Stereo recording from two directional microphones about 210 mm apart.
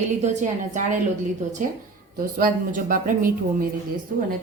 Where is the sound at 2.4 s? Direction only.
40° right (ahead or behind).